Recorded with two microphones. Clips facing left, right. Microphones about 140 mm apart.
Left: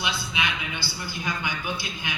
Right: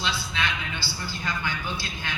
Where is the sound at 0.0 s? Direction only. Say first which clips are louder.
Even; 15° left (ahead or behind).